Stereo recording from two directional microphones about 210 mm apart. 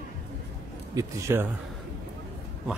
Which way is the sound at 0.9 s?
10° right (ahead or behind).